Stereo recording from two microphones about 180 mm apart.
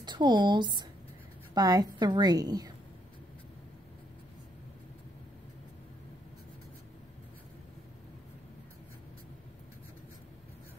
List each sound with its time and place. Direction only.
0.0 s a woman's voice: 25° right (ahead or behind)